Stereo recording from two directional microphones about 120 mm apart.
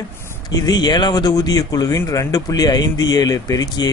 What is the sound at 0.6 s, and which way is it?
Speech, 35° left (ahead or behind).